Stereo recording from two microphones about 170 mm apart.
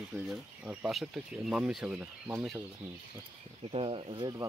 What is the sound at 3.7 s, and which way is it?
Speech, 35° right (ahead or behind).